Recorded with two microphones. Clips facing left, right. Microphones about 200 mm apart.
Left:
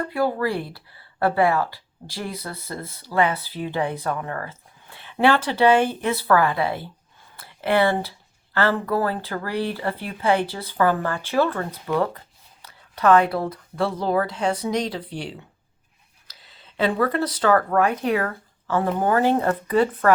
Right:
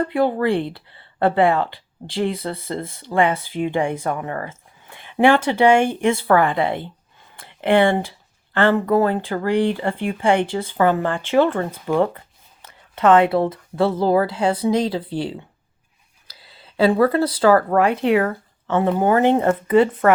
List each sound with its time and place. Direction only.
0.0 s speech: 25° right (ahead or behind)
4.9 s a sound: 15° right (ahead or behind)
5.5 s speech: 10° right (ahead or behind); by 15.0 s 30° right (ahead or behind)
16.3 s a sound: 30° right (ahead or behind)
17.4 s speech: 30° right (ahead or behind)
18.8 s speech: 15° right (ahead or behind)